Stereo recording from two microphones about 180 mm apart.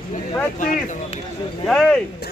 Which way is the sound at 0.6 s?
45° left (ahead or behind).